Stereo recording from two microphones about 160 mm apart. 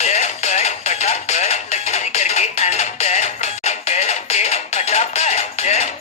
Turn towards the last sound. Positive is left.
turn(degrees=45)  # may be behind; listen again after turning